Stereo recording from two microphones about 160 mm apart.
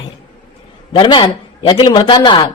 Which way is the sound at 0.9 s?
30° left (ahead or behind).